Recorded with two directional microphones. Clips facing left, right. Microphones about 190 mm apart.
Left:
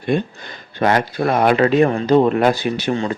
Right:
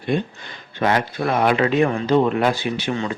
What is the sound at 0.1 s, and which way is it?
Speech, 45° left (ahead or behind).